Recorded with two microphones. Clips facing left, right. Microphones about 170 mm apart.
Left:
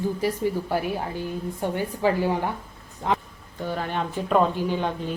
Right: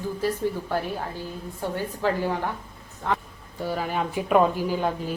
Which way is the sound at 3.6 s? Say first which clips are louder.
Right 1 dB; 5° right (ahead or behind).